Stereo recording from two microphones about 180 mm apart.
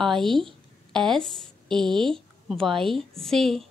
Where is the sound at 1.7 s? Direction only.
Centre (ahead or behind).